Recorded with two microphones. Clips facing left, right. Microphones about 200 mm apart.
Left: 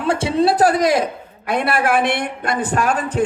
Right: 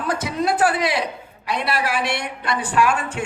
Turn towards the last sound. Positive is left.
turn(degrees=40)  # may be behind; listen again after turning